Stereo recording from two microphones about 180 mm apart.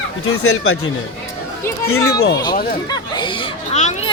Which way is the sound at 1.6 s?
15° left (ahead or behind).